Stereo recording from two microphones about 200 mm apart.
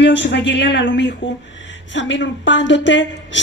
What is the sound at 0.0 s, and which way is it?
A woman's voice, 60° left (ahead or behind).